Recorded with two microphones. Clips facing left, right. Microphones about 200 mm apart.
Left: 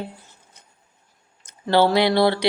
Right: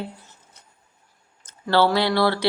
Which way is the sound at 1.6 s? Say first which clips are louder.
Left 2 dB; 20° left (ahead or behind).